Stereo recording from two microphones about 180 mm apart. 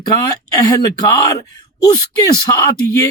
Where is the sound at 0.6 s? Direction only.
20° left (ahead or behind).